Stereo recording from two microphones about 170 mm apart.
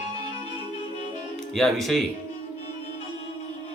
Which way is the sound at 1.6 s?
Centre (ahead or behind).